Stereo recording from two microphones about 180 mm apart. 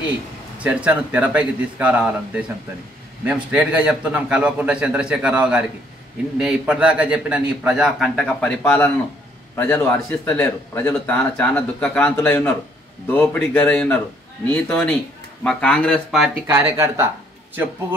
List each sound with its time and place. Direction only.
0.7 s a man's voice: 10° right (ahead or behind)
16.7 s speech: 15° right (ahead or behind)